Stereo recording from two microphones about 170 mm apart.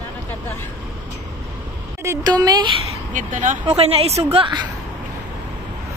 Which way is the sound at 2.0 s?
20° right (ahead or behind).